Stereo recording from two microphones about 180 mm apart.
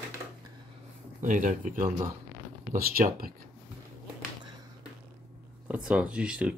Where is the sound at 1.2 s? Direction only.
45° right (ahead or behind).